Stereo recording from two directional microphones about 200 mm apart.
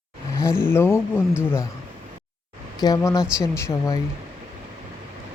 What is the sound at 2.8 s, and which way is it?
Speech, 15° left (ahead or behind).